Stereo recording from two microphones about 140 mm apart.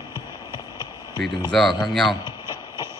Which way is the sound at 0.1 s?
30° left (ahead or behind).